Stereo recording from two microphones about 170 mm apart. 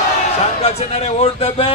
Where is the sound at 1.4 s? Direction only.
35° left (ahead or behind).